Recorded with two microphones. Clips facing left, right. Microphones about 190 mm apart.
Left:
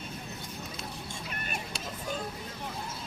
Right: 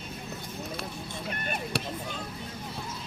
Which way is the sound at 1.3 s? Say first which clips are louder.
Right 9 dB; 50° right (ahead or behind).